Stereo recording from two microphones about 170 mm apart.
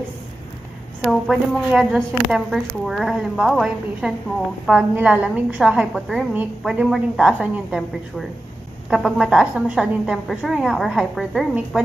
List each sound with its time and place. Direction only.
1.0 s a woman's voice: centre (ahead or behind)